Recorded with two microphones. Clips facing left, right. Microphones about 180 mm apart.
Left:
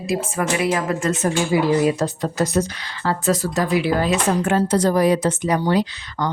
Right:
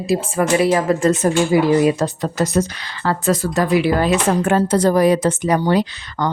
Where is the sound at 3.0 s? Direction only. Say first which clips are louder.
Right 2 dB; 55° right (ahead or behind).